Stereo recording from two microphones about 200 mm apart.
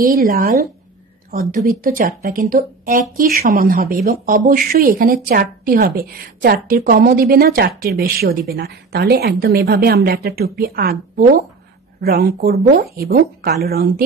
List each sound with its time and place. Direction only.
0.0 s speech: 45° right (ahead or behind)